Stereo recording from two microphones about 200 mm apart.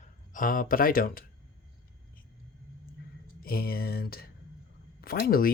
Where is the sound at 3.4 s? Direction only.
50° left (ahead or behind).